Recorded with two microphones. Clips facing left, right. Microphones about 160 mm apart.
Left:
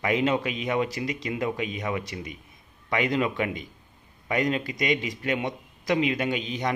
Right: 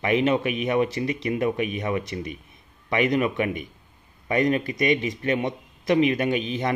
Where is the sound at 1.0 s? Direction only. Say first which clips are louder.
Right 4 dB; 20° left (ahead or behind).